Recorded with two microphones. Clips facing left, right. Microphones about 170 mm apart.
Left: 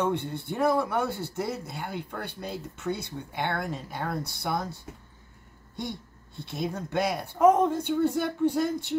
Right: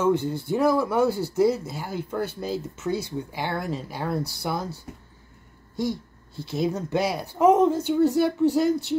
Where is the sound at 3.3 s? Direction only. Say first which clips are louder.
Even; 5° right (ahead or behind).